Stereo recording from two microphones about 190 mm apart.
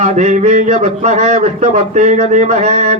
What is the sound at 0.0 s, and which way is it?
A man's voice, 40° right (ahead or behind).